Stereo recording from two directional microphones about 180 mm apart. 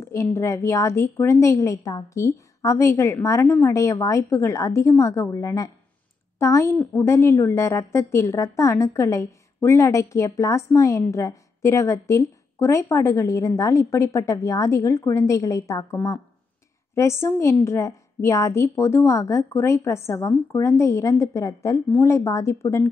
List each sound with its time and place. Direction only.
0.0 s a woman's voice: 15° left (ahead or behind)